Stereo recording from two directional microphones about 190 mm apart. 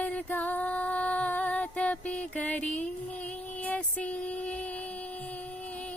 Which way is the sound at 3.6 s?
5° left (ahead or behind).